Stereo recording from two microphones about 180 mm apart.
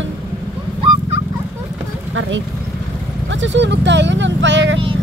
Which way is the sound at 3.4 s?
85° right.